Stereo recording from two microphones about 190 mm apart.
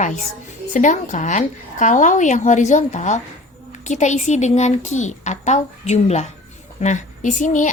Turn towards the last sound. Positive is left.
turn(degrees=40)  # may be behind; listen again after turning